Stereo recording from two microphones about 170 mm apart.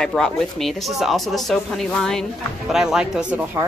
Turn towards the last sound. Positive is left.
turn(degrees=-5)  # may be behind; listen again after turning